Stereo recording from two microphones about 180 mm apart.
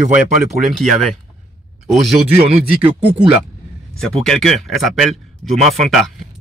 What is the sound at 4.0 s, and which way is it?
Speech, 5° left (ahead or behind).